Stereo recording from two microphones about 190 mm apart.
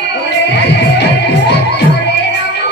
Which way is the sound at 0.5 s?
60° left (ahead or behind).